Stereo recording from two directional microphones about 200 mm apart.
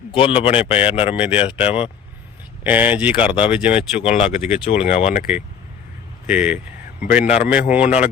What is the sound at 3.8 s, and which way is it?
Speech, 30° left (ahead or behind).